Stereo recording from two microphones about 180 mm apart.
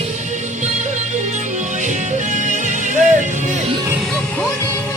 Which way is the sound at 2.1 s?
40° right (ahead or behind).